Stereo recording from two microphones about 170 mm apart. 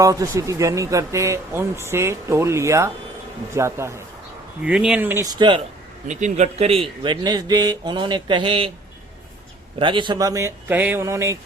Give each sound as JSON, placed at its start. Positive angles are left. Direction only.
{"t": 0.0, "sound": "speech", "side_deg": -20}
{"t": 4.6, "sound": "speech", "side_deg": -5}
{"t": 6.1, "sound": "speech", "side_deg": -45}
{"t": 9.7, "sound": "speech", "side_deg": -30}